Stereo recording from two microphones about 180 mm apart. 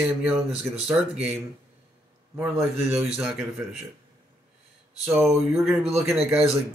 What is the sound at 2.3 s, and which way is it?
Speech, 5° right (ahead or behind).